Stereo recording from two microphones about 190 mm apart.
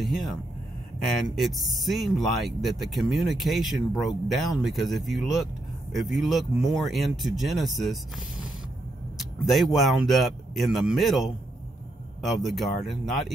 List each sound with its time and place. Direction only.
0.0 s speech: centre (ahead or behind)